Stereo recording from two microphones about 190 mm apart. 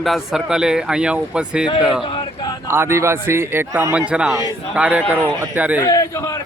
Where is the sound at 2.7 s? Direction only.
15° right (ahead or behind).